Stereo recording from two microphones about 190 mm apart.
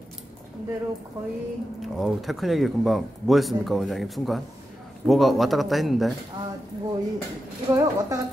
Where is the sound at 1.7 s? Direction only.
Centre (ahead or behind).